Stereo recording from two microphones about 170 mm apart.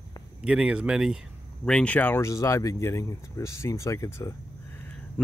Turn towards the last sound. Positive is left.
turn(degrees=15)  # may be behind; listen again after turning